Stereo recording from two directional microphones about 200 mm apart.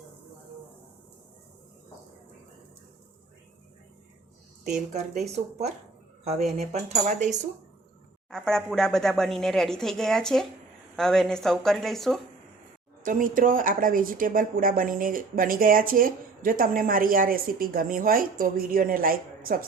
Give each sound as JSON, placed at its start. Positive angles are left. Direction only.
{"t": 4.9, "sound": "speech", "side_deg": -35}
{"t": 8.3, "sound": "speech", "side_deg": 0}
{"t": 13.0, "sound": "speech", "side_deg": -40}